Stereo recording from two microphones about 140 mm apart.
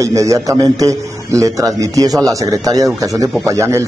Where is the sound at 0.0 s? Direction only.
25° right (ahead or behind).